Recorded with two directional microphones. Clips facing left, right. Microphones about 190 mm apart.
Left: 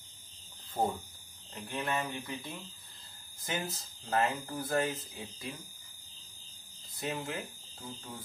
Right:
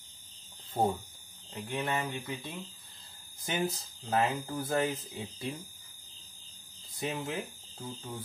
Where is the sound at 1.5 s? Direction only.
20° right (ahead or behind).